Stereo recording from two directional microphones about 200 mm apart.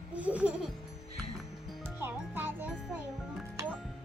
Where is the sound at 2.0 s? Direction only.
10° right (ahead or behind).